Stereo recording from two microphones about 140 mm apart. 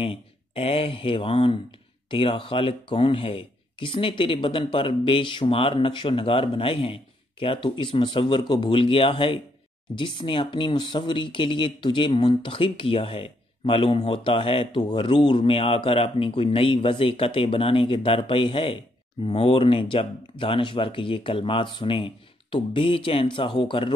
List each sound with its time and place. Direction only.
0.0 s speech: 40° left (ahead or behind)